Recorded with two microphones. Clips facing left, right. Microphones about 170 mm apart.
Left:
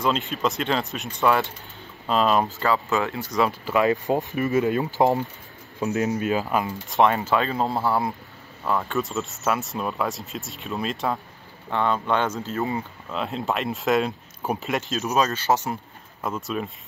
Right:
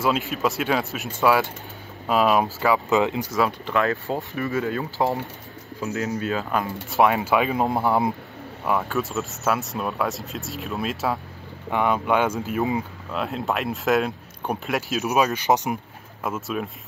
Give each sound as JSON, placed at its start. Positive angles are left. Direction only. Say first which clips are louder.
{"t": 0.0, "sound": "speech", "louder": "right 1 dB", "side_deg": -5}
{"t": 3.3, "sound": "speech", "louder": "left 2 dB", "side_deg": 5}
{"t": 6.5, "sound": "speech", "louder": "even", "side_deg": 0}
{"t": 7.2, "sound": "speech", "louder": "right 2 dB", "side_deg": -10}
{"t": 8.6, "sound": "speech", "louder": "right 1 dB", "side_deg": -5}
{"t": 13.1, "sound": "speech", "louder": "right 1 dB", "side_deg": 0}
{"t": 16.2, "sound": "speech", "louder": "right 1 dB", "side_deg": -5}